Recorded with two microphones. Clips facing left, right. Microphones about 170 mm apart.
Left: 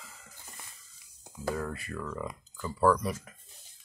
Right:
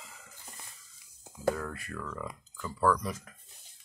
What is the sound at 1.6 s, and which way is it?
Speech, 5° left (ahead or behind).